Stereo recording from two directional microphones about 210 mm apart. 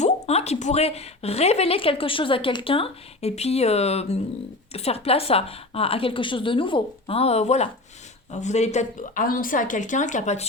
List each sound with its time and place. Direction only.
0.0 s speech: 30° left (ahead or behind)